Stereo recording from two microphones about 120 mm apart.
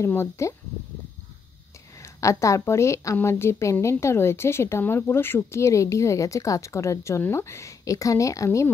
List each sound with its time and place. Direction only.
0.0 s a woman's voice: 20° left (ahead or behind)
2.1 s a woman's voice: 25° left (ahead or behind)